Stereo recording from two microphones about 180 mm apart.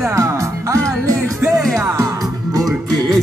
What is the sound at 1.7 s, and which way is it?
Music, 15° right (ahead or behind).